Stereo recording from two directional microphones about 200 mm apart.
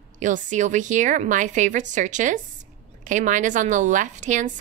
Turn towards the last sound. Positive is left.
turn(degrees=-40)  # may be behind; listen again after turning